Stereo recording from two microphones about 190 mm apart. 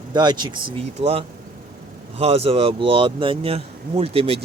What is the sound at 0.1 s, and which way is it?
Speech, 20° right (ahead or behind).